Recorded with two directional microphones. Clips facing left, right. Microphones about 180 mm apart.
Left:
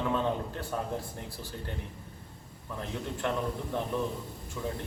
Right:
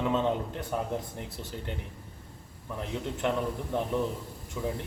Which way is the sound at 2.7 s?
15° right (ahead or behind).